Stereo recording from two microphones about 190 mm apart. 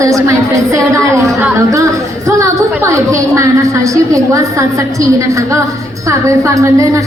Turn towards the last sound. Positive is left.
turn(degrees=-15)  # may be behind; listen again after turning